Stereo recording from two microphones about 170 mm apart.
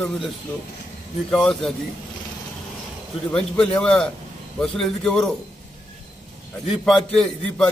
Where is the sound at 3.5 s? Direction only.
5° left (ahead or behind).